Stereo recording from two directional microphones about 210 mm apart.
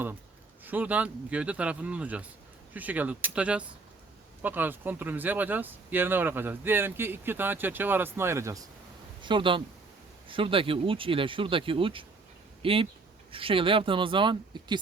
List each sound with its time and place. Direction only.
0.6 s speech: 10° right (ahead or behind)